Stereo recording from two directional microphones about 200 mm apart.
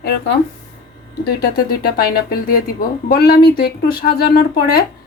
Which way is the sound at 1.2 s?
50° left (ahead or behind).